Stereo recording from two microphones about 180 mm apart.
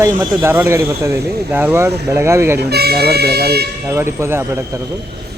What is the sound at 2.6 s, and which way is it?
Speech, 60° right (ahead or behind).